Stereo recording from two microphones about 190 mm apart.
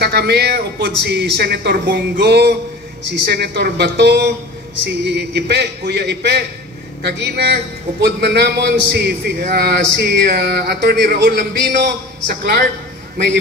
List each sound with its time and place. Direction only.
0.0 s a man's voice: 60° right (ahead or behind)